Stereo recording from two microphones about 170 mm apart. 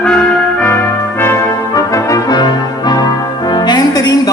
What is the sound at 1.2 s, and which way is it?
Brass instrument, 15° left (ahead or behind).